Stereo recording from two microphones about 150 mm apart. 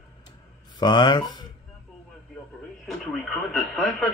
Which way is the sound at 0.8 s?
30° left (ahead or behind).